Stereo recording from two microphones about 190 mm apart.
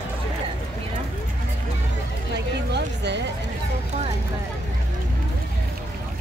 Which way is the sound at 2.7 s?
65° right (ahead or behind).